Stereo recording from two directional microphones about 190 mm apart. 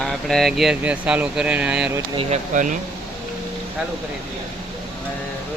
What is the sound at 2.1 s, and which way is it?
Speech, 40° right (ahead or behind).